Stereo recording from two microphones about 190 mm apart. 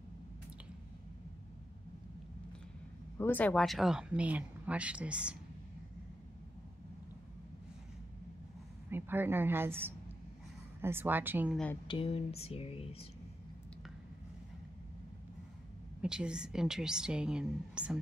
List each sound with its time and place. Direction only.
3.2 s a woman's voice: 10° left (ahead or behind); by 5.4 s 5° right (ahead or behind)
8.9 s a woman's voice: 10° right (ahead or behind)
11.5 s a woman's voice: 5° left (ahead or behind)
11.9 s speech: 30° left (ahead or behind)
16.0 s a woman's voice: 5° right (ahead or behind)